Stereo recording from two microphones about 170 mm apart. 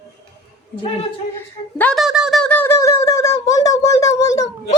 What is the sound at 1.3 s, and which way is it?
Speech, 10° left (ahead or behind).